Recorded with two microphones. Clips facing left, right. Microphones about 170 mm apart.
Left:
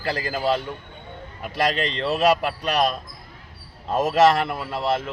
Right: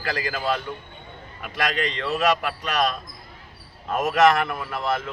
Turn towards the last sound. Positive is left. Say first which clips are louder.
# left 2 dB
turn(degrees=30)  # may be behind; listen again after turning